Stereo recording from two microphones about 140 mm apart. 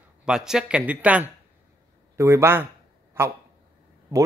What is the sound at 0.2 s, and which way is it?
Speech, 5° right (ahead or behind).